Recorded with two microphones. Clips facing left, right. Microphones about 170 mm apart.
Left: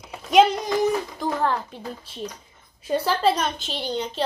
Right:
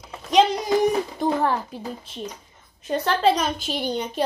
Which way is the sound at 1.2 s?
15° right (ahead or behind).